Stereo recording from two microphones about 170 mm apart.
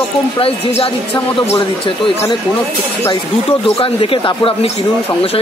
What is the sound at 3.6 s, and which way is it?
Speech, 35° left (ahead or behind).